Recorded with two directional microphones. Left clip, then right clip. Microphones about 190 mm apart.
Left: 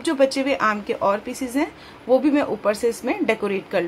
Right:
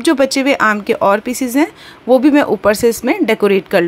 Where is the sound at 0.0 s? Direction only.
40° right (ahead or behind).